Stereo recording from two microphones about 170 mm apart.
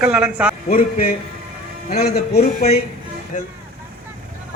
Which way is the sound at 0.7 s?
55° left (ahead or behind).